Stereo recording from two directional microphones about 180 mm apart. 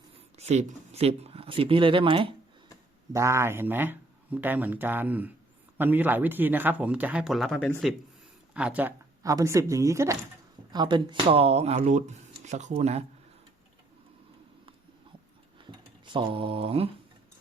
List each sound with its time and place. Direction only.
0.3 s speech: 35° right (ahead or behind)
3.1 s speech: 15° right (ahead or behind); by 13.1 s 35° right (ahead or behind)
15.6 s tick-tock: 30° right (ahead or behind)
16.0 s speech: 25° right (ahead or behind)